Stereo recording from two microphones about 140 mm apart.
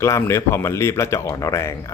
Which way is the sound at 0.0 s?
20° left (ahead or behind).